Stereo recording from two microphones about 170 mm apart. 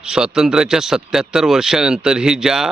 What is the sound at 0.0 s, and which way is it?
A man's voice, 5° right (ahead or behind).